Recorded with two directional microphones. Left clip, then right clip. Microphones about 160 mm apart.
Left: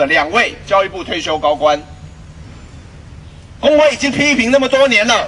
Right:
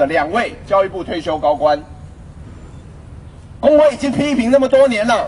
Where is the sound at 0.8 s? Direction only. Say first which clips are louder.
Left 1 dB; 45° right (ahead or behind).